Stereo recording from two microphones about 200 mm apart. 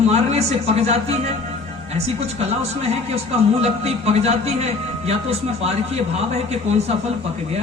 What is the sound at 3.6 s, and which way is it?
A man's voice, 30° right (ahead or behind).